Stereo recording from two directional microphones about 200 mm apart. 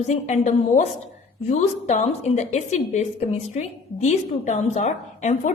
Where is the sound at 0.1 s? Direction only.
35° left (ahead or behind).